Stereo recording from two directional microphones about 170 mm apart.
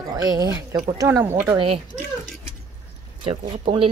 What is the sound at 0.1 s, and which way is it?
Speech, 25° right (ahead or behind).